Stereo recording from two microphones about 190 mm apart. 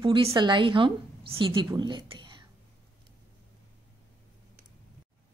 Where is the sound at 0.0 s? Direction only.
25° right (ahead or behind).